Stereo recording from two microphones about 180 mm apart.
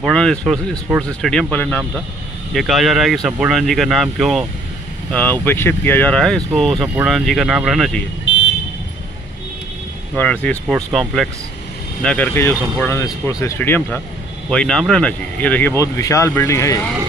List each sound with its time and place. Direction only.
0.0 s speech: 5° left (ahead or behind)
8.3 s vehicle: 90° left
10.1 s speech: 10° left (ahead or behind)